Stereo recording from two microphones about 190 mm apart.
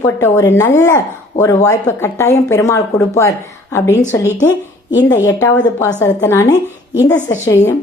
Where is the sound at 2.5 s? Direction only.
15° left (ahead or behind).